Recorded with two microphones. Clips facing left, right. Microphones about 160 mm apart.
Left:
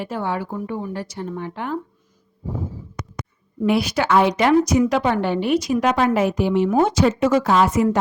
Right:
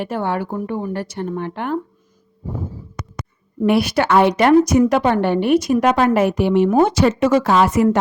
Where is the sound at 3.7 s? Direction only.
60° right (ahead or behind).